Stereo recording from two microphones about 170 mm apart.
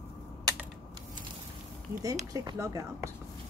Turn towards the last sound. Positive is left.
turn(degrees=-20)  # may be behind; listen again after turning